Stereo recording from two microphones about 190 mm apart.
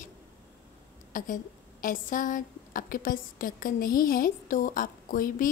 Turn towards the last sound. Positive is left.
turn(degrees=45)  # may be behind; listen again after turning